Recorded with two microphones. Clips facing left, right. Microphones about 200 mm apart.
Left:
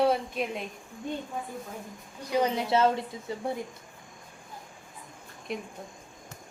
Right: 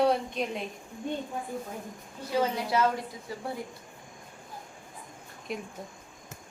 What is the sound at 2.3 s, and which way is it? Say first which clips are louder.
A woman's voice: left 2 dB; 20° left (ahead or behind).